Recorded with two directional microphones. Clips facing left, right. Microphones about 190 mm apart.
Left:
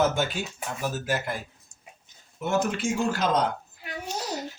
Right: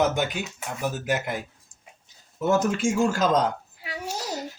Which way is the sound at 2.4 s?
45° right (ahead or behind).